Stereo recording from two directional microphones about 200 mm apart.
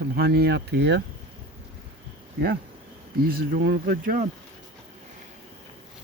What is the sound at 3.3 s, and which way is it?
Speech, 50° right (ahead or behind).